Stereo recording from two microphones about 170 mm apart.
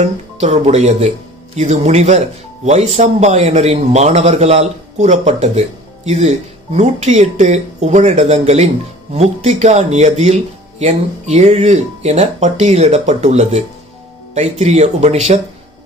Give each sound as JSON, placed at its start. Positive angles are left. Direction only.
{"t": 0.0, "sound": "speech", "side_deg": -40}